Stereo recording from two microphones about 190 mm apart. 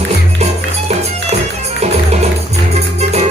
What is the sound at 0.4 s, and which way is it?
Music, 35° right (ahead or behind).